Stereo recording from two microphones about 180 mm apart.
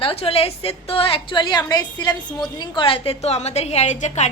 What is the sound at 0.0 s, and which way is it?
A woman's voice, 30° left (ahead or behind).